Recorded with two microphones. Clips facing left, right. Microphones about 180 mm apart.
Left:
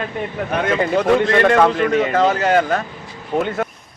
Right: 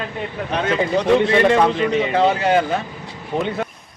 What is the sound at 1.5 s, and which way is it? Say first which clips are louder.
Speech: left 2 dB; 55° left (ahead or behind).